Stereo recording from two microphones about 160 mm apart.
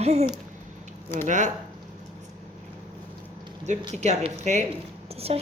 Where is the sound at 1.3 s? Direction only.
50° right (ahead or behind).